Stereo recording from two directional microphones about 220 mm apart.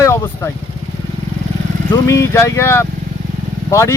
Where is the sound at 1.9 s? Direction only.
15° left (ahead or behind).